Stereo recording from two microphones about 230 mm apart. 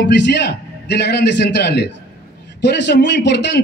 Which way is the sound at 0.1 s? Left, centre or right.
Left.